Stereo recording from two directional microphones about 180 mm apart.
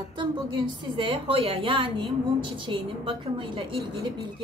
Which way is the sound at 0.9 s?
30° right (ahead or behind).